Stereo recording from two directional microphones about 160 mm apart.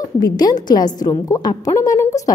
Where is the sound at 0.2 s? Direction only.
25° left (ahead or behind).